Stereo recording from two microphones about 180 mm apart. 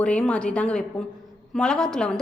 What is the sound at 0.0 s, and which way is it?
A woman's voice, 5° left (ahead or behind).